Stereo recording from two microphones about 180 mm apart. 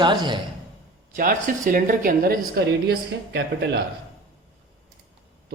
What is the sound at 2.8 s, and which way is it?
Speech, 65° right (ahead or behind).